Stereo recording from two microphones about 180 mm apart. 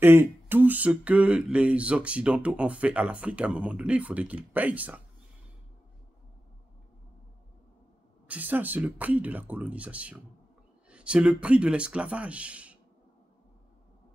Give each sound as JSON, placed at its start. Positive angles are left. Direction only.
{"t": 0.0, "sound": "speech", "side_deg": -10}
{"t": 8.3, "sound": "speech", "side_deg": -10}